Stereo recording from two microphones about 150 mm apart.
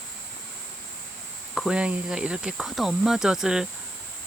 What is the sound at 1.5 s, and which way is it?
Speech, 5° right (ahead or behind).